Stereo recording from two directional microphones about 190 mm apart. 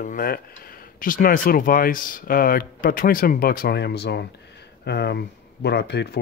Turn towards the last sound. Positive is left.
turn(degrees=60)  # may be behind; listen again after turning